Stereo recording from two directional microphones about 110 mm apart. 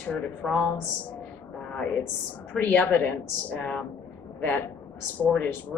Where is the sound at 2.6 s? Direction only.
15° left (ahead or behind).